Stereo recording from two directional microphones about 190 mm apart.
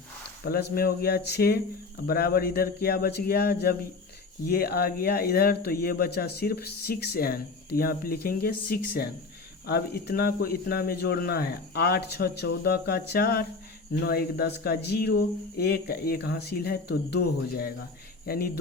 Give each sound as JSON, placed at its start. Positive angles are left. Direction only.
{"t": 0.4, "sound": "speech", "side_deg": 50}